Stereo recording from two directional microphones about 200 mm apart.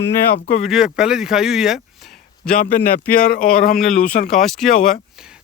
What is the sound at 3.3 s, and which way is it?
Speech, 45° left (ahead or behind).